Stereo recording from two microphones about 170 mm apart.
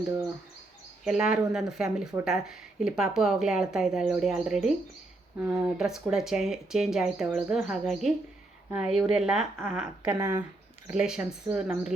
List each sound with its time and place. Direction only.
1.0 s speech: 5° right (ahead or behind)
10.1 s speech: 15° right (ahead or behind)
10.8 s speech: 5° right (ahead or behind)